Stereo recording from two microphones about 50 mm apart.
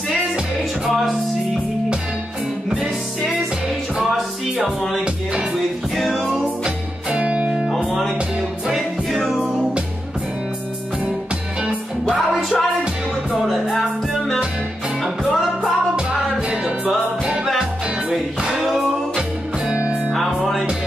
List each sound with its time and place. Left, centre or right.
0.8 s music: centre
2.8 s music: centre
5.9 s music: centre
7.1 s music: right
7.7 s music: centre
8.6 s music: centre
12.3 s music: centre
18.5 s music: centre
19.7 s music: right